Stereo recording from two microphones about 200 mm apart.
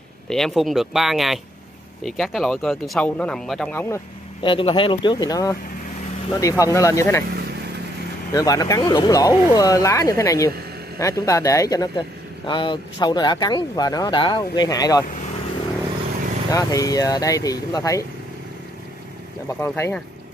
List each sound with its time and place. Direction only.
0.3 s speech: centre (ahead or behind)
4.4 s speech: 25° left (ahead or behind)
8.3 s speech: 20° left (ahead or behind)
16.4 s speech: 15° left (ahead or behind)
19.4 s speech: 10° left (ahead or behind)